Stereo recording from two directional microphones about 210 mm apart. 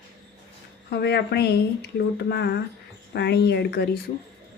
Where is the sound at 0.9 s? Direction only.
50° left (ahead or behind).